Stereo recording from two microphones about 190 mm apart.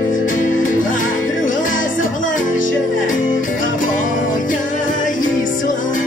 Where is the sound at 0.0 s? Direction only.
45° left (ahead or behind).